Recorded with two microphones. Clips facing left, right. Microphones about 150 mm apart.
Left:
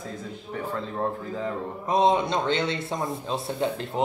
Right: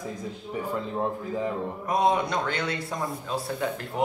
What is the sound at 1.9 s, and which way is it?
A man's voice, 25° left (ahead or behind).